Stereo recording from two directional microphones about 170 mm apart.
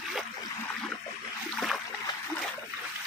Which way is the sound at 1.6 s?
Centre (ahead or behind).